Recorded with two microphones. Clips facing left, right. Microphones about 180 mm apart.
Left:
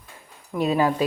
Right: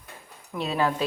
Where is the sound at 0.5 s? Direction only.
10° left (ahead or behind).